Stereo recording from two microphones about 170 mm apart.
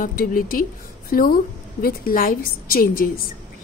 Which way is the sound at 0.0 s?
55° left (ahead or behind).